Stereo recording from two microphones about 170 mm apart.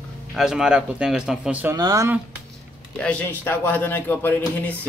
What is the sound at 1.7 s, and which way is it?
Speech, 20° right (ahead or behind).